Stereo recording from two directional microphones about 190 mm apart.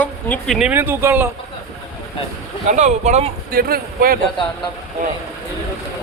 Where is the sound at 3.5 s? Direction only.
50° right (ahead or behind).